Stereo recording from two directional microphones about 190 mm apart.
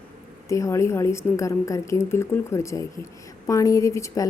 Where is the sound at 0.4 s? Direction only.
15° left (ahead or behind).